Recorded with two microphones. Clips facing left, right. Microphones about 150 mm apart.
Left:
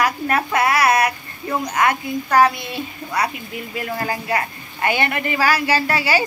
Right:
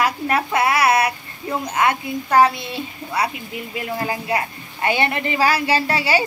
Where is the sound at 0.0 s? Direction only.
25° right (ahead or behind).